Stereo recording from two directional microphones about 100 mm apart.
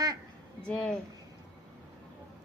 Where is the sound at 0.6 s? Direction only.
10° left (ahead or behind).